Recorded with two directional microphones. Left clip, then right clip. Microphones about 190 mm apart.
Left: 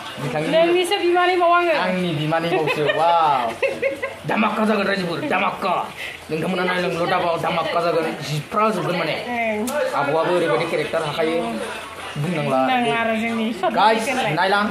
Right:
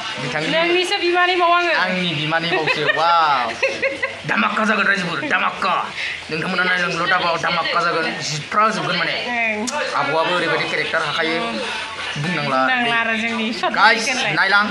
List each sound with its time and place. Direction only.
0.5 s speech: 10° right (ahead or behind)
3.0 s speech: 5° left (ahead or behind)
12.4 s speech: 10° right (ahead or behind)